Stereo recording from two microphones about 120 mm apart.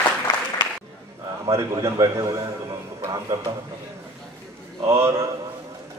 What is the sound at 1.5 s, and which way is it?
A man's voice, 25° right (ahead or behind).